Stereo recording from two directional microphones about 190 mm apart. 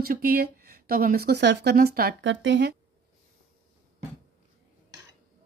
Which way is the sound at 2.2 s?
75° right (ahead or behind).